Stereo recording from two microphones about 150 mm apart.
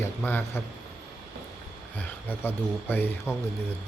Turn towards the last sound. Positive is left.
turn(degrees=15)  # may be behind; listen again after turning